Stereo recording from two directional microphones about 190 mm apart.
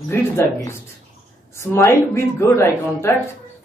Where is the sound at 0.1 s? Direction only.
15° left (ahead or behind).